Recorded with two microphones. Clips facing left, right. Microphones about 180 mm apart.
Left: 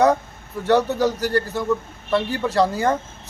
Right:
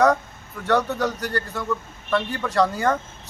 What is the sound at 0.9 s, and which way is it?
Speech, 30° left (ahead or behind).